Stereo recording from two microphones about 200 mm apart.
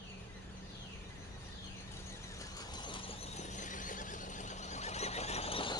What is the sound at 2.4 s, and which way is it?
Squeal, 20° left (ahead or behind).